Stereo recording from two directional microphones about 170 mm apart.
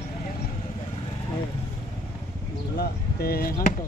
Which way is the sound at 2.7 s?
65° left (ahead or behind).